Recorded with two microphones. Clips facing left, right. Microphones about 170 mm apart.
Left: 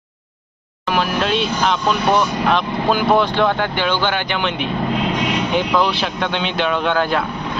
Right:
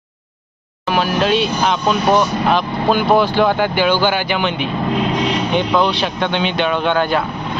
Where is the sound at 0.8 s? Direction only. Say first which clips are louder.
Right 3 dB; centre (ahead or behind).